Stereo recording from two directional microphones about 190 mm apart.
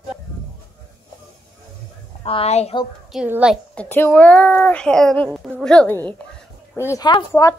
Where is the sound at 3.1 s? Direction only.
5° right (ahead or behind).